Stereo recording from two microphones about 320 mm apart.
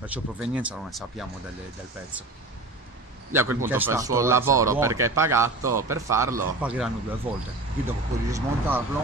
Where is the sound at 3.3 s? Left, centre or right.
Centre.